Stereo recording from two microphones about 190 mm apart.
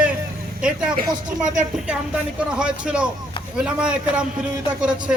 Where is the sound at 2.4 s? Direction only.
5° right (ahead or behind).